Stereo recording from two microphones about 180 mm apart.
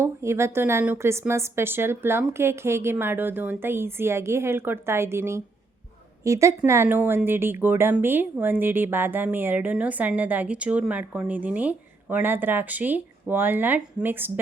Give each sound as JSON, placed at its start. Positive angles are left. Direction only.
{"t": 0.0, "sound": "a woman's voice", "side_deg": -15}